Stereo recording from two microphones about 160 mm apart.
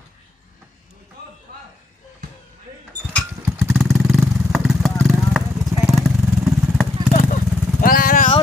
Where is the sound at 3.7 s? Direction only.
5° left (ahead or behind).